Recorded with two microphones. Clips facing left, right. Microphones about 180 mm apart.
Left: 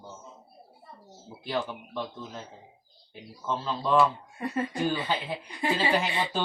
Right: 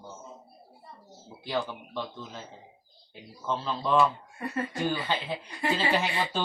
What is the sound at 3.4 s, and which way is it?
Speech, centre (ahead or behind).